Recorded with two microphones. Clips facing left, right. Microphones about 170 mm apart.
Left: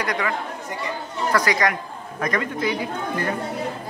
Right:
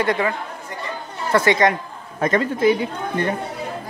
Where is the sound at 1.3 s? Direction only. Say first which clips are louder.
Right 5 dB; 25° right (ahead or behind).